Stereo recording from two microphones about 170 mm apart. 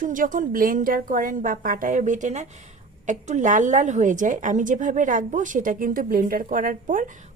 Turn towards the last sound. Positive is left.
turn(degrees=-50)  # may be behind; listen again after turning